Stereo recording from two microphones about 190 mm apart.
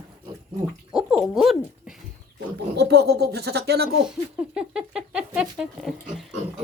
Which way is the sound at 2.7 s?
60° right (ahead or behind).